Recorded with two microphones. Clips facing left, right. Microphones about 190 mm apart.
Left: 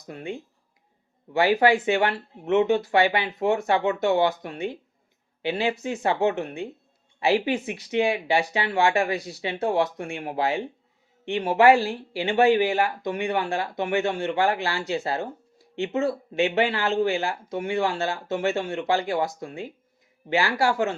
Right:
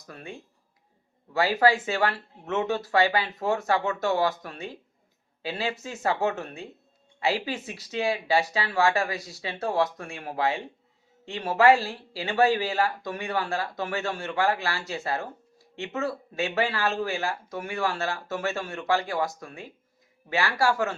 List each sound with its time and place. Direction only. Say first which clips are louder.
0.0 s speech: left 7 dB; 25° left (ahead or behind)